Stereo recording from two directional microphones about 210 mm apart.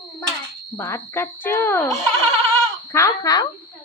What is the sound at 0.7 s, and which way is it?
A child's voice, 10° left (ahead or behind).